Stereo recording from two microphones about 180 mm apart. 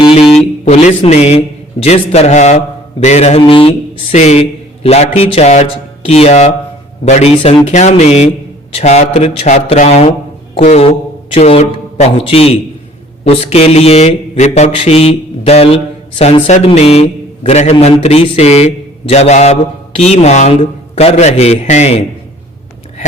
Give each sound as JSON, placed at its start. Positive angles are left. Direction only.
{"t": 0.0, "sound": "a man's voice", "side_deg": 30}
{"t": 6.1, "sound": "mantra", "side_deg": 35}
{"t": 11.3, "sound": "a man's voice", "side_deg": 35}
{"t": 13.2, "sound": "mantra", "side_deg": 35}